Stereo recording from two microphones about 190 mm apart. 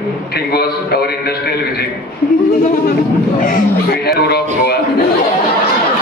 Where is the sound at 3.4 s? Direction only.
55° left (ahead or behind).